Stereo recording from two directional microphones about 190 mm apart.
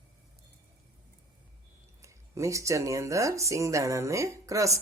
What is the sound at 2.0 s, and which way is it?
Speech, 15° right (ahead or behind).